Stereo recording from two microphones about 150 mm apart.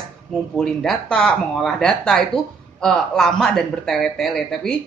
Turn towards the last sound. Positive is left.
turn(degrees=5)  # may be behind; listen again after turning